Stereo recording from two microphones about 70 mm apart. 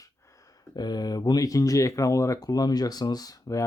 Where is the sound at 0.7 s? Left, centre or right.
Left.